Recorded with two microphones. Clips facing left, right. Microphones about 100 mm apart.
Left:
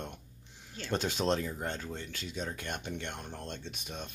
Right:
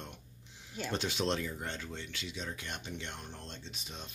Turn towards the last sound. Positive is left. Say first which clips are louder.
# left 5 dB
turn(degrees=55)  # may be behind; listen again after turning